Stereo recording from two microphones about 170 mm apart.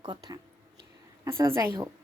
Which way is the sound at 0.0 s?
25° right (ahead or behind).